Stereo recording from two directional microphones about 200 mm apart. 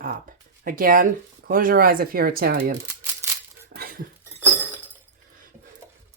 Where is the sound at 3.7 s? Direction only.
50° right (ahead or behind).